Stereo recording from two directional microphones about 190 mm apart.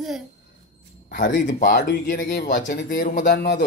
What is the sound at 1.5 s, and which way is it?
Speech, 45° left (ahead or behind).